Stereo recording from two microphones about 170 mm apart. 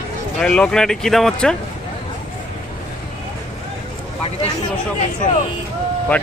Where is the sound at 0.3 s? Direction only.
5° left (ahead or behind).